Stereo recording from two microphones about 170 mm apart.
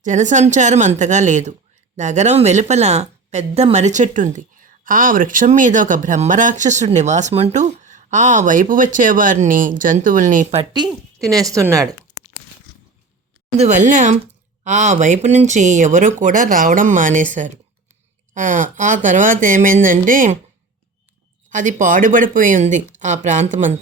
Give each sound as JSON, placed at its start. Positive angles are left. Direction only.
{"t": 0.0, "sound": "a woman's voice", "side_deg": -45}
{"t": 10.7, "sound": "a woman's voice", "side_deg": -25}
{"t": 13.6, "sound": "a woman's voice", "side_deg": -45}
{"t": 21.5, "sound": "a woman's voice", "side_deg": -50}